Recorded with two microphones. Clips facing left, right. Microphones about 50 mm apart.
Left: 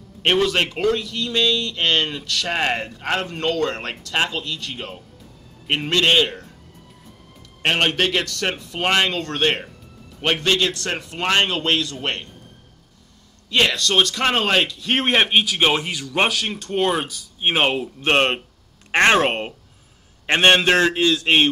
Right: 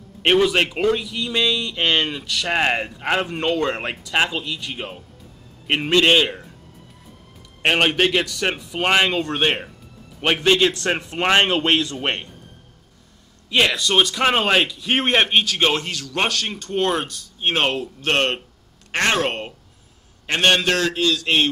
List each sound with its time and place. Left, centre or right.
0.2 s a man's voice: centre
7.6 s a man's voice: centre
13.5 s a man's voice: centre; by 21.5 s left